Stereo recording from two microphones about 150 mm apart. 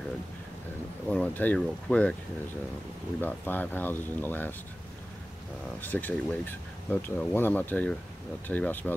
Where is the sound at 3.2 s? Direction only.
10° left (ahead or behind).